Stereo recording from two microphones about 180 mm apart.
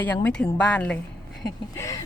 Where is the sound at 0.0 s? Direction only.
10° left (ahead or behind).